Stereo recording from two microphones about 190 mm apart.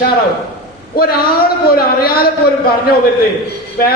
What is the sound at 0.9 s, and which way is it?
A man's voice, 55° left (ahead or behind).